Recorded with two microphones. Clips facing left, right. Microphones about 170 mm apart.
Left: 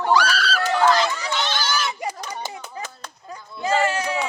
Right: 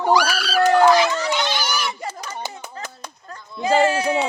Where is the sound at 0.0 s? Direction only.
10° right (ahead or behind).